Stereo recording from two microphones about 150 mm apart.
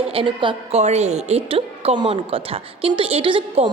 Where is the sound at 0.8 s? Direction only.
45° right (ahead or behind).